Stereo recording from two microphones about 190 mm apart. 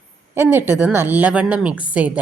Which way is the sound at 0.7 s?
10° right (ahead or behind).